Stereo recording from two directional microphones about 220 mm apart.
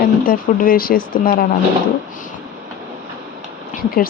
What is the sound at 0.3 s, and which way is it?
Speech, 40° left (ahead or behind).